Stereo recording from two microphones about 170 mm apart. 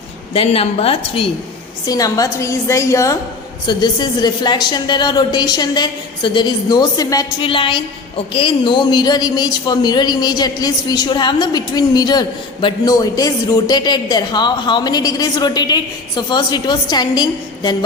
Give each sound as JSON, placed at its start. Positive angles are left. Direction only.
{"t": 0.3, "sound": "a woman's voice", "side_deg": 35}
{"t": 1.9, "sound": "a woman's voice", "side_deg": 20}